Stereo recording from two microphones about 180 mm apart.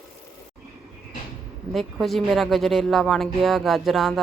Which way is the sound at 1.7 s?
Centre (ahead or behind).